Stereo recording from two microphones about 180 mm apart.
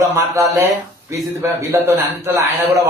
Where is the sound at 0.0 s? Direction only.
15° right (ahead or behind).